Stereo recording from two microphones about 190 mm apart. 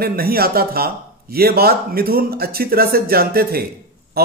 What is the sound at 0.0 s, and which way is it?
A man's voice, 55° right (ahead or behind).